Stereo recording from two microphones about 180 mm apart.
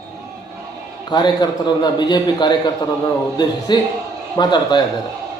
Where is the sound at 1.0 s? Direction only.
25° left (ahead or behind).